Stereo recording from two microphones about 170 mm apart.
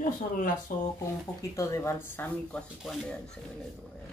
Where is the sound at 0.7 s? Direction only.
55° left (ahead or behind).